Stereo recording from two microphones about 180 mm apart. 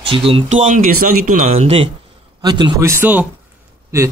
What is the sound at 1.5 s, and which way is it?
Speech, 35° right (ahead or behind).